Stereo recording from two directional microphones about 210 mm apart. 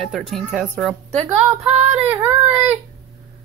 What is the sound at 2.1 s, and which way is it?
Speech, 10° right (ahead or behind).